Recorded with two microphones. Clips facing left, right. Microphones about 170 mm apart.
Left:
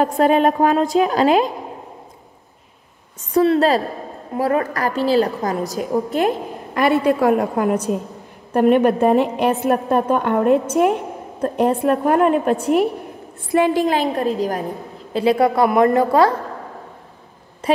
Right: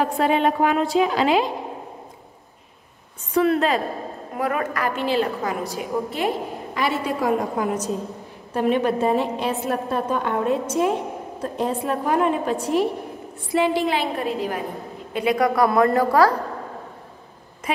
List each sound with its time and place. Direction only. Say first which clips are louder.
0.0 s a woman's voice: left 5 dB; 45° left (ahead or behind)
3.3 s a woman's voice: left 4 dB; 35° left (ahead or behind); by 12.8 s 60° left (ahead or behind)
13.5 s a woman's voice: left 4 dB; 50° left (ahead or behind)
15.1 s a woman's voice: left 4 dB; 30° left (ahead or behind)